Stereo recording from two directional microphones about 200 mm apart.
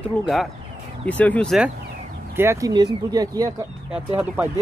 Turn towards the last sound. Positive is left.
turn(degrees=-10)  # may be behind; listen again after turning